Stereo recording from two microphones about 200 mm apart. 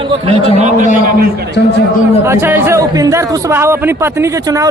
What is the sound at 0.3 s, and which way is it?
Speech, 30° right (ahead or behind).